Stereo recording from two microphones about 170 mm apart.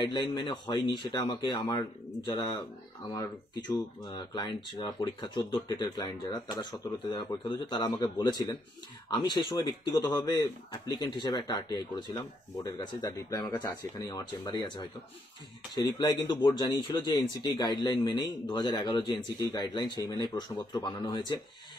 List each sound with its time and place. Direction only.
0.0 s speech: 25° left (ahead or behind)
1.5 s speech: 15° left (ahead or behind)
2.2 s speech: 25° left (ahead or behind)
4.0 s speech: 25° left (ahead or behind)
15.7 s speech: 20° left (ahead or behind)